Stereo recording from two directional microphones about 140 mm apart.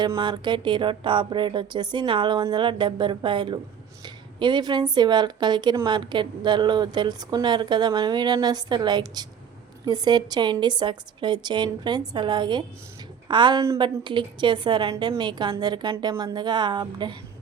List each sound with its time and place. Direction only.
0.0 s speech: 30° right (ahead or behind)